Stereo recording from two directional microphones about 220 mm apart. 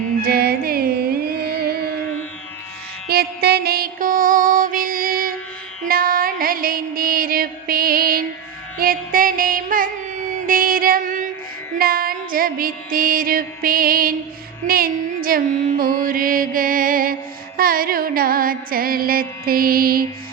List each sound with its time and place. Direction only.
0.3 s music: 45° right (ahead or behind)
3.1 s music: 45° right (ahead or behind)
14.7 s female singing: 40° right (ahead or behind)
15.8 s music: 40° right (ahead or behind)